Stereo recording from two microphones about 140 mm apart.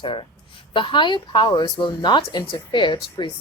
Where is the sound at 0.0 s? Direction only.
35° left (ahead or behind).